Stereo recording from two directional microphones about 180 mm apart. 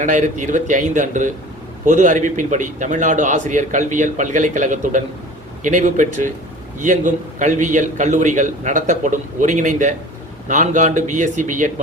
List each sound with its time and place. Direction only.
0.0 s a man's voice: 45° right (ahead or behind)